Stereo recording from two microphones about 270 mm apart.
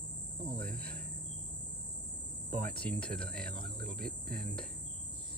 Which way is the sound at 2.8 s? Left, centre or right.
Centre.